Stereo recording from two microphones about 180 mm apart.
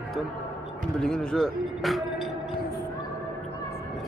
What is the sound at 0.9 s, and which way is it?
Speech, 5° left (ahead or behind).